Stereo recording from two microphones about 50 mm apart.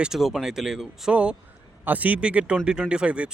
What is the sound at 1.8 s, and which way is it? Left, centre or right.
Speech, right.